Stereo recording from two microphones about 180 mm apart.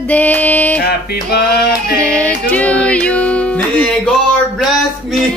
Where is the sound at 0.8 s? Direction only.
60° left (ahead or behind).